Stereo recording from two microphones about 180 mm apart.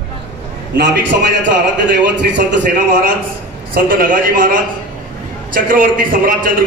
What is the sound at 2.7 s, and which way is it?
A man's voice, 55° right (ahead or behind).